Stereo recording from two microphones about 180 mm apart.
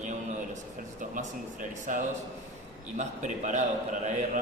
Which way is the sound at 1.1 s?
45° right (ahead or behind).